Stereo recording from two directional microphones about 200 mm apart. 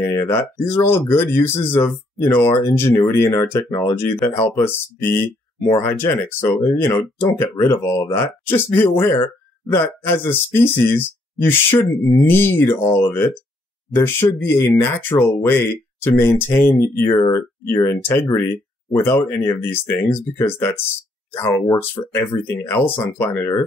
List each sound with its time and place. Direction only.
0.0 s a sound: 10° left (ahead or behind)
0.7 s speech: 10° left (ahead or behind)
19.2 s speech: 10° left (ahead or behind)